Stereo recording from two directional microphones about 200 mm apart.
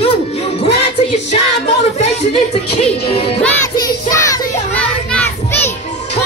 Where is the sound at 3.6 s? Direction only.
15° left (ahead or behind).